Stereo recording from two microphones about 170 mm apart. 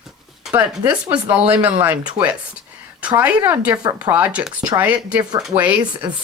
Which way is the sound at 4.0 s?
10° right (ahead or behind).